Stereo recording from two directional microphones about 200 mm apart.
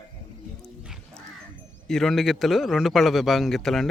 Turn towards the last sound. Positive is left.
turn(degrees=0)  # may be behind; listen again after turning